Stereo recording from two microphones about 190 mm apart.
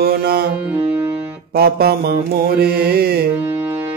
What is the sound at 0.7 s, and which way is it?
Music, 10° right (ahead or behind).